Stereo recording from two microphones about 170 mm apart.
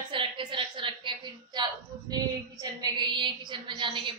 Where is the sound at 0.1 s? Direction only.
30° right (ahead or behind).